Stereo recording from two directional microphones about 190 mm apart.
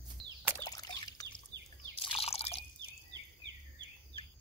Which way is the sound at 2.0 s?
30° left (ahead or behind).